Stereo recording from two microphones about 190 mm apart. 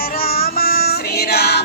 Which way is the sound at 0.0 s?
55° left (ahead or behind).